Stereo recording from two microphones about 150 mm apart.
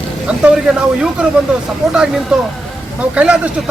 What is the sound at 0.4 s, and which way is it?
Speech, 5° right (ahead or behind).